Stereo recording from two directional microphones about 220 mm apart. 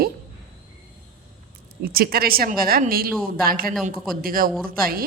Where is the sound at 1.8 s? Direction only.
45° right (ahead or behind).